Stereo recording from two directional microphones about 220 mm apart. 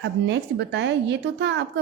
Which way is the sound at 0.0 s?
55° right (ahead or behind).